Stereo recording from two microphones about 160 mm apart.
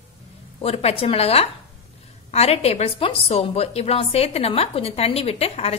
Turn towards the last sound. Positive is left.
turn(degrees=40)  # may be behind; listen again after turning